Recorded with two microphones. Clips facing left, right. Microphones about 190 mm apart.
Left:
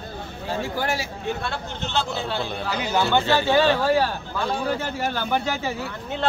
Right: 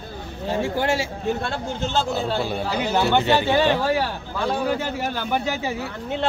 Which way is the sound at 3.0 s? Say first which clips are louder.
Right 1 dB; 15° right (ahead or behind).